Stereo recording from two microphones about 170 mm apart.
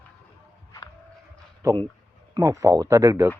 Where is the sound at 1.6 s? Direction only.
20° right (ahead or behind).